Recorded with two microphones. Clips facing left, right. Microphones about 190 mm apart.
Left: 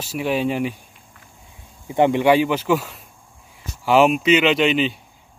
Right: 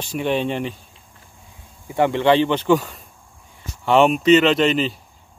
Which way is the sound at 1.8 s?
20° left (ahead or behind).